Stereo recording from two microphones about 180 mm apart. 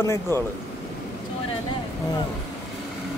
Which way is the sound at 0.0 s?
15° left (ahead or behind).